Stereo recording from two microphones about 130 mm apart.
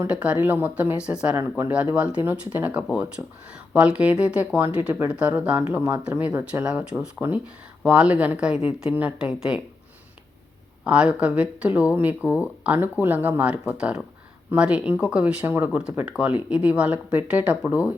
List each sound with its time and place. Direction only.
0.0 s speech: 10° right (ahead or behind)
1.4 s speech: 20° right (ahead or behind)
10.8 s speech: 10° right (ahead or behind)